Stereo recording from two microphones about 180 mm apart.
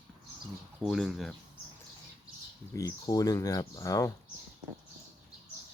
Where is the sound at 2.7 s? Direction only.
20° left (ahead or behind).